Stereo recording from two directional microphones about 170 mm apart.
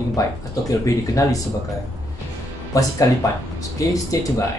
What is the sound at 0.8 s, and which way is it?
Speech, 20° left (ahead or behind).